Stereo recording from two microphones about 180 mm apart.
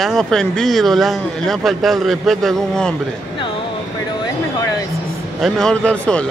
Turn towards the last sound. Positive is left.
turn(degrees=5)  # may be behind; listen again after turning